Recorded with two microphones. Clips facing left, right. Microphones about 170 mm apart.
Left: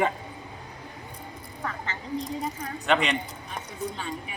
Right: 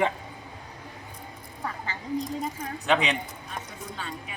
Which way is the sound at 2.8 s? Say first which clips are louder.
Even; centre (ahead or behind).